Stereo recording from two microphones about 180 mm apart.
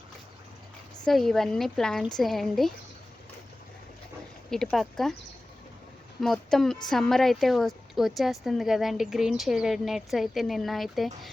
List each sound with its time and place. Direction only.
1.0 s a woman's voice: centre (ahead or behind)
4.5 s a woman's voice: centre (ahead or behind)
6.1 s a woman's voice: centre (ahead or behind)